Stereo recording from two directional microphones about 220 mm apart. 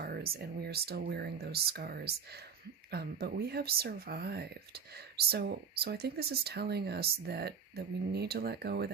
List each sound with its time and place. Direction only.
0.0 s speech: 45° right (ahead or behind)